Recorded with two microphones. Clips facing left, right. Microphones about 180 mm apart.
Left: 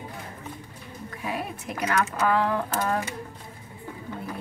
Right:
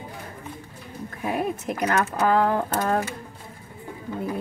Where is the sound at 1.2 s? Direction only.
50° right (ahead or behind).